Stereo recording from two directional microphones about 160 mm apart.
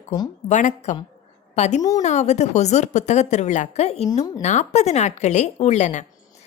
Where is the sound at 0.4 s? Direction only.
45° left (ahead or behind).